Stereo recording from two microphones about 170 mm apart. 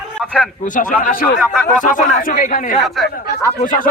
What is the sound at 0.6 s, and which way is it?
Speech, 50° left (ahead or behind).